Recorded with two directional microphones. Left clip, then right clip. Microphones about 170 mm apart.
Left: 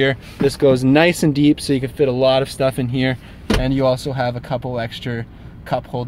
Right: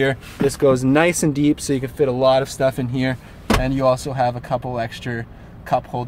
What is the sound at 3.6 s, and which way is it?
Speech, 20° left (ahead or behind).